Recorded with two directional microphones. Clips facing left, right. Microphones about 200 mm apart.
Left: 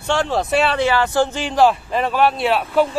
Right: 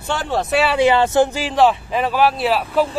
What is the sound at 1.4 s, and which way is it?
Speech, centre (ahead or behind).